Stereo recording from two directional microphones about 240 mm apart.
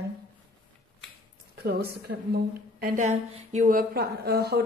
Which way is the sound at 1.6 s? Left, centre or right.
Right.